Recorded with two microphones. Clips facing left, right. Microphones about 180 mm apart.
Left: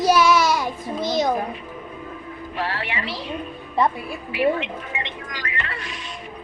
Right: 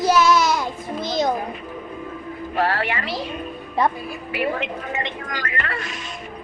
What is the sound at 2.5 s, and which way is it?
Speech, 45° right (ahead or behind).